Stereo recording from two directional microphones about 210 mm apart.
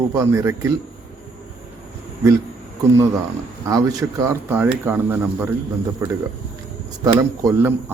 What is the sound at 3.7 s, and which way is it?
Speech, 15° right (ahead or behind).